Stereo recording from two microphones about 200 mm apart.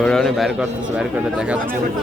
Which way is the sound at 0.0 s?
Centre (ahead or behind).